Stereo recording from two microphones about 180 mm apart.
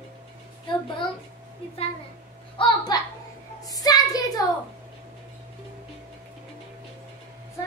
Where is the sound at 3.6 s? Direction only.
20° left (ahead or behind).